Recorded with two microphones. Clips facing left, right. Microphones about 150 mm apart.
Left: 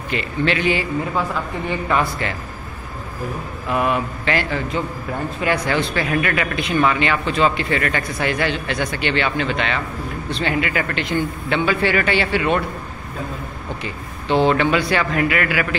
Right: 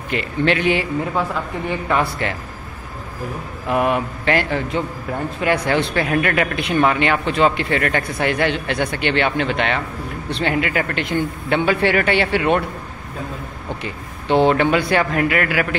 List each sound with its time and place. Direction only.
0.1 s a man's voice: 55° right (ahead or behind)
3.6 s a man's voice: 55° right (ahead or behind)
13.8 s speech: 55° right (ahead or behind)